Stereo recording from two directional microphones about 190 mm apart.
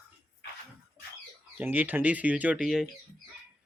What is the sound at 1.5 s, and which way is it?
Speech, 10° right (ahead or behind).